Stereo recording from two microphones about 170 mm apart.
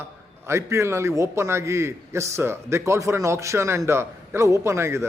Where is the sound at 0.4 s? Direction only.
15° right (ahead or behind).